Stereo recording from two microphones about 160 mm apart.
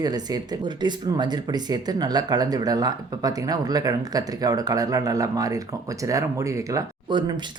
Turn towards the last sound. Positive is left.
turn(degrees=-25)  # may be behind; listen again after turning